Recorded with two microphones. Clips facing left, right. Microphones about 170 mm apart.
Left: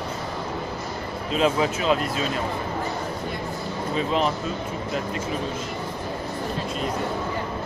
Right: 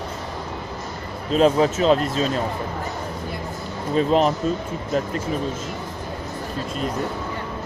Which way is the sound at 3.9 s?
40° right (ahead or behind).